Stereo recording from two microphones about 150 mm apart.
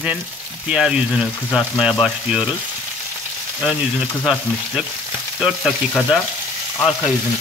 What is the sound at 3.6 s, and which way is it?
Frying, 5° right (ahead or behind).